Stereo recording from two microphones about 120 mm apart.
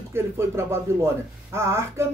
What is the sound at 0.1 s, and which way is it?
Speech, 20° right (ahead or behind).